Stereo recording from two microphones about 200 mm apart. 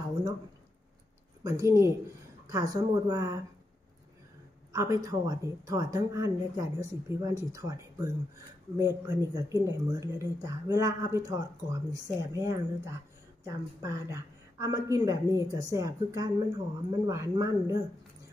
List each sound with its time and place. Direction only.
1.4 s a woman's voice: 15° right (ahead or behind)
4.7 s a woman's voice: 15° right (ahead or behind)